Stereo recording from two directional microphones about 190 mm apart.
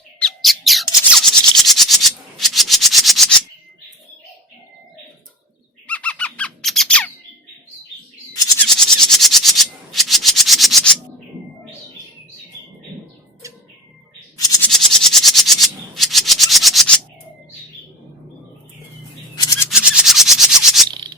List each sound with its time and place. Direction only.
0.2 s a sound: centre (ahead or behind)
5.9 s squeak: 5° left (ahead or behind)
8.5 s maraca: centre (ahead or behind)
13.4 s bird: 15° right (ahead or behind)
14.6 s rub: centre (ahead or behind)
19.7 s a sound: 5° right (ahead or behind)